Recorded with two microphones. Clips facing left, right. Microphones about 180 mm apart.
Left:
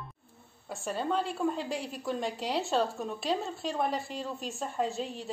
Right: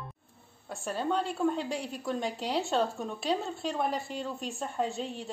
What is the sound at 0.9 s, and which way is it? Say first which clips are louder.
A woman's voice: even; centre (ahead or behind).